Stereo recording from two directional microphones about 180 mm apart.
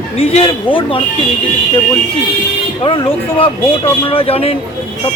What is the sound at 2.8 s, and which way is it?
Speech, 30° left (ahead or behind).